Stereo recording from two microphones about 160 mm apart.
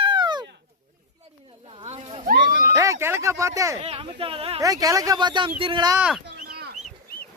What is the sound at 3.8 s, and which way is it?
Speech, 35° right (ahead or behind).